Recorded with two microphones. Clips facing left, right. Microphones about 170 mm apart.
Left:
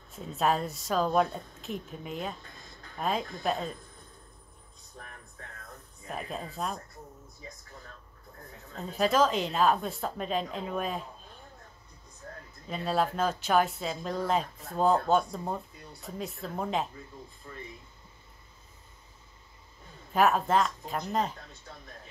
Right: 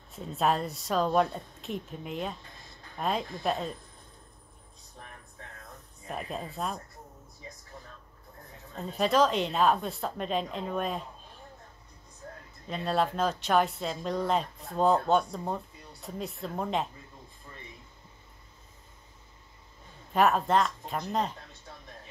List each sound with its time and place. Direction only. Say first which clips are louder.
0.1 s speech: even; centre (ahead or behind)
6.0 s speech: right 1 dB; centre (ahead or behind)
8.8 s speech: even; centre (ahead or behind)
12.6 s speech: even; centre (ahead or behind)
20.1 s speech: even; centre (ahead or behind)